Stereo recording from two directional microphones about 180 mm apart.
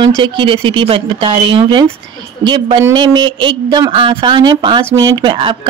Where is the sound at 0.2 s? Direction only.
30° right (ahead or behind).